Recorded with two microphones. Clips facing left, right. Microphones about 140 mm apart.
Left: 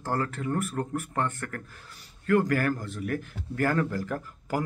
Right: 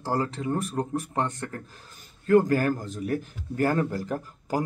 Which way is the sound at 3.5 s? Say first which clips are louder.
Right 2 dB; 25° right (ahead or behind).